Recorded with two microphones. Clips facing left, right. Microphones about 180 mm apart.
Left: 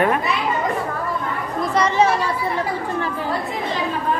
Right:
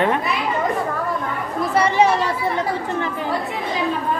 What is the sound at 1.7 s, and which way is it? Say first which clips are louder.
Speech: right 1 dB; 10° right (ahead or behind).